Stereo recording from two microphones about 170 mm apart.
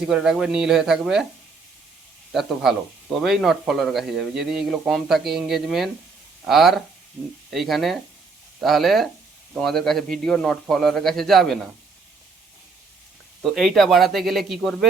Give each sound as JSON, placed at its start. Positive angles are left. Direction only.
{"t": 0.1, "sound": "a man's voice", "side_deg": -5}
{"t": 2.3, "sound": "a man's voice", "side_deg": 0}
{"t": 13.4, "sound": "a man's voice", "side_deg": 0}